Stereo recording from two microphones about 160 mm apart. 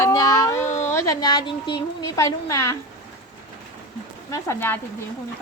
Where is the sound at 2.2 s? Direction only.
20° left (ahead or behind).